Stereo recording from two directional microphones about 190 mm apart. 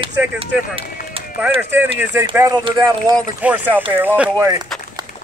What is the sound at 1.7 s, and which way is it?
Speech, 10° right (ahead or behind).